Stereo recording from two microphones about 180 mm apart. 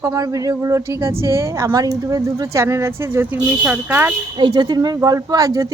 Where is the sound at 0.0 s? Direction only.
15° right (ahead or behind).